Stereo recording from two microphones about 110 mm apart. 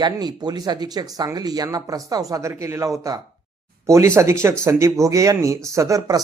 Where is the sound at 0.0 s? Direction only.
40° right (ahead or behind).